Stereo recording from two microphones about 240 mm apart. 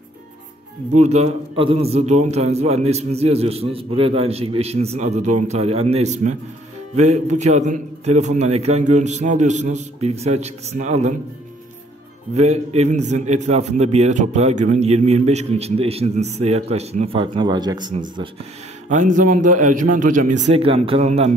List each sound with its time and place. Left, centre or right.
0.9 s a man's voice: right
12.4 s a man's voice: right
18.9 s a man's voice: right